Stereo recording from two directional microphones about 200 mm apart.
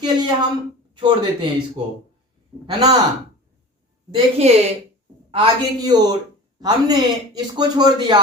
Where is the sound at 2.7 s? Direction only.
20° right (ahead or behind).